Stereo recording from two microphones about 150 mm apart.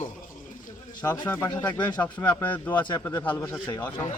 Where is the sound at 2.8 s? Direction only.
30° left (ahead or behind).